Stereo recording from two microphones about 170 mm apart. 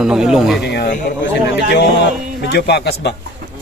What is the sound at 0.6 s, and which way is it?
Speech, 80° left.